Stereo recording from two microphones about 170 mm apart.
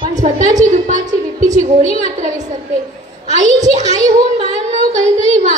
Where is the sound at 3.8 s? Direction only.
45° right (ahead or behind).